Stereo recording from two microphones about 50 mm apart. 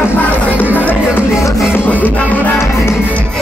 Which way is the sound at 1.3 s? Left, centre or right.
Left.